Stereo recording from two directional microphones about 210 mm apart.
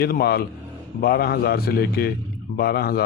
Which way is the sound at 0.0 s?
50° left (ahead or behind).